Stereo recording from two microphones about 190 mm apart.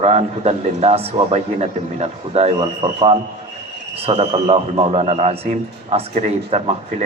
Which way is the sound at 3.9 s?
30° right (ahead or behind).